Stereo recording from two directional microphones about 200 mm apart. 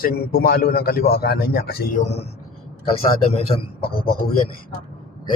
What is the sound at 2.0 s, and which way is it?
Speech, 30° left (ahead or behind).